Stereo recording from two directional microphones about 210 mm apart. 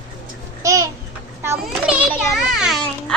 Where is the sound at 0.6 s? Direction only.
15° right (ahead or behind).